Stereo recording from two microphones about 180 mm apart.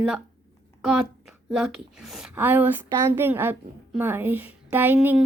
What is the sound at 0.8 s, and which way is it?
A child's voice, 5° right (ahead or behind).